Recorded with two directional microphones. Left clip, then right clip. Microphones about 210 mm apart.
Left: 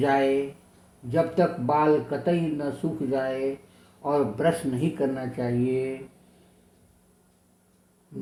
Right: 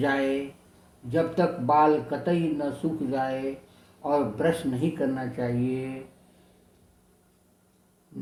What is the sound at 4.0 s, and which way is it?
Speech, 20° left (ahead or behind).